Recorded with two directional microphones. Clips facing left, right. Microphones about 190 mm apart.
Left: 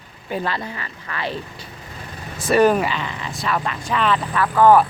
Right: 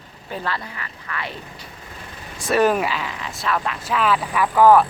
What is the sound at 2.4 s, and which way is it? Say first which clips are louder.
Speech: left 2 dB; centre (ahead or behind).